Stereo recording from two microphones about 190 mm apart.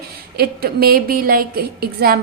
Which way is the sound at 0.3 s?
55° right (ahead or behind).